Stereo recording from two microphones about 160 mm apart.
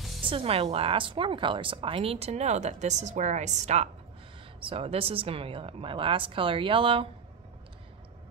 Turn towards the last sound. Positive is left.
turn(degrees=-35)  # may be behind; listen again after turning